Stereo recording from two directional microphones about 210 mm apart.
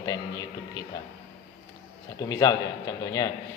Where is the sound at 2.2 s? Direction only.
15° left (ahead or behind).